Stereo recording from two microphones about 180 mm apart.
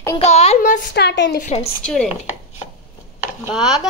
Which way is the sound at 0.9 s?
70° left (ahead or behind).